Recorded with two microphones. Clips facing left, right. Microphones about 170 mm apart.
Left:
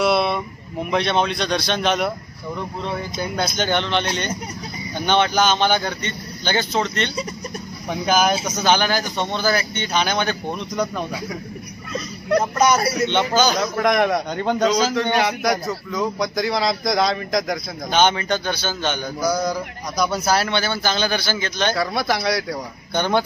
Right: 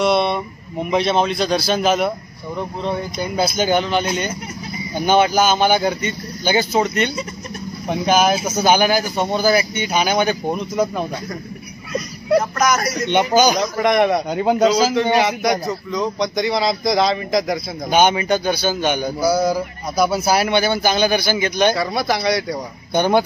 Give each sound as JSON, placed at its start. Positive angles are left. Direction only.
{"t": 0.0, "sound": "a man's voice", "side_deg": 0}
{"t": 11.9, "sound": "a sound", "side_deg": -5}
{"t": 12.5, "sound": "speech", "side_deg": 30}
{"t": 13.1, "sound": "a man's voice", "side_deg": -15}
{"t": 13.6, "sound": "a man's voice", "side_deg": 0}
{"t": 21.7, "sound": "speech", "side_deg": 0}
{"t": 22.9, "sound": "a man's voice", "side_deg": -15}